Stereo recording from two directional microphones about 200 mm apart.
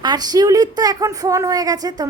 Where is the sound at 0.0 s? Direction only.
20° right (ahead or behind).